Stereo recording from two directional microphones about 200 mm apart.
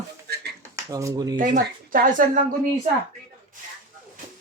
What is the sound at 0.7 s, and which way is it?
Speech, 15° right (ahead or behind).